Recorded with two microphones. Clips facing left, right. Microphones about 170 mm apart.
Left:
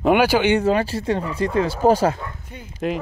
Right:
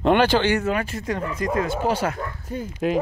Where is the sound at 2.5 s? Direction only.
40° right (ahead or behind).